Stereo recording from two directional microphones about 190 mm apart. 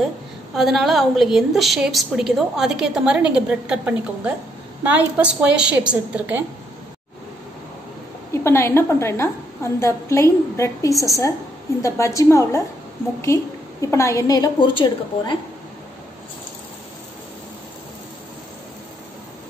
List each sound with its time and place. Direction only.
0.6 s a woman's voice: centre (ahead or behind)
8.3 s a woman's voice: 15° left (ahead or behind)